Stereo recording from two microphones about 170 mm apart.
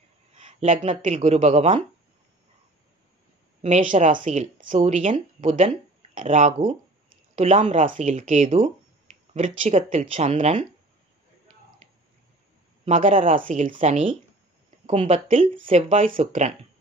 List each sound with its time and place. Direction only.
0.4 s speech: 40° right (ahead or behind)
3.9 s speech: 50° right (ahead or behind)
8.5 s speech: 35° right (ahead or behind)
12.8 s speech: 35° right (ahead or behind)
13.3 s speech: 50° right (ahead or behind); by 16.1 s 35° right (ahead or behind)
16.1 s speech: 45° right (ahead or behind)